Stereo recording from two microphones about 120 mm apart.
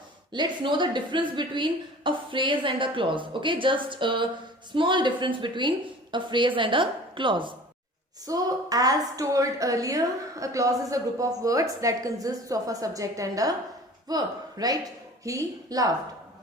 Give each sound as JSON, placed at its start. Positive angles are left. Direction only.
{"t": 0.3, "sound": "a woman's voice", "side_deg": -40}
{"t": 8.3, "sound": "a woman's voice", "side_deg": -30}